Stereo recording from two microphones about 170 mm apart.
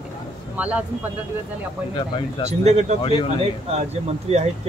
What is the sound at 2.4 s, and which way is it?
Speech, 40° right (ahead or behind).